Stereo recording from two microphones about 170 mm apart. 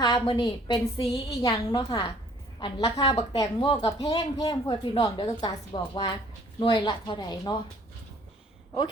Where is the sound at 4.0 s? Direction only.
20° left (ahead or behind).